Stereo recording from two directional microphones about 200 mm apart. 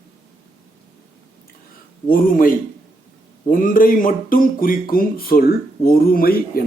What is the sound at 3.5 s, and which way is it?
Speech, 40° left (ahead or behind).